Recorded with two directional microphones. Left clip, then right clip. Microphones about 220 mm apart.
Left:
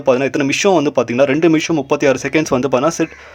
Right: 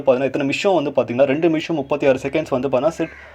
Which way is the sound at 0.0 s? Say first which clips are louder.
Left 3 dB; 20° left (ahead or behind).